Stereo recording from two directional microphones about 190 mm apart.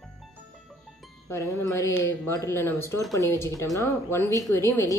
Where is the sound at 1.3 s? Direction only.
15° left (ahead or behind).